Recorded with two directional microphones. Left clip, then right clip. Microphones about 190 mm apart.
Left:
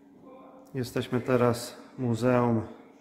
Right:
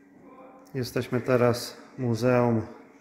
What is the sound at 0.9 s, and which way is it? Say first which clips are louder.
Speech: right 2 dB; 20° right (ahead or behind).